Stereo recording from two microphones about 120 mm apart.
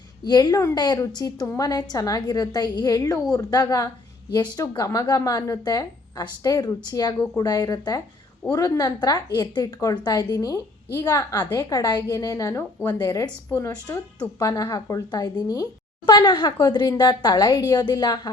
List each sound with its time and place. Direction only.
0.3 s a woman's voice: 35° left (ahead or behind)
11.7 s a woman's voice: 35° left (ahead or behind)